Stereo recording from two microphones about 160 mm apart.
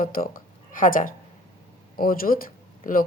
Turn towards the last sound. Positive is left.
turn(degrees=60)  # may be behind; listen again after turning